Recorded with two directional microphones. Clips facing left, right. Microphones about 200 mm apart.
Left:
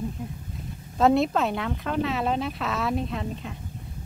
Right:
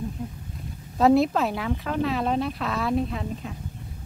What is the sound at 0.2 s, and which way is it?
Speech, centre (ahead or behind).